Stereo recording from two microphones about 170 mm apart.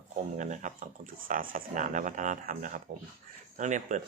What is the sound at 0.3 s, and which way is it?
Speech, 45° right (ahead or behind).